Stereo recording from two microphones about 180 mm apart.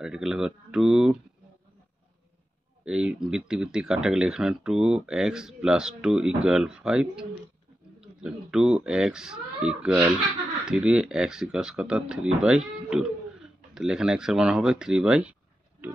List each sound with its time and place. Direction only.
0.0 s speech: 5° right (ahead or behind)
2.8 s speech: 5° right (ahead or behind)